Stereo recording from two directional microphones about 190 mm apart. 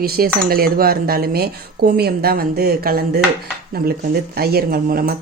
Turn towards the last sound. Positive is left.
turn(degrees=-50)  # may be behind; listen again after turning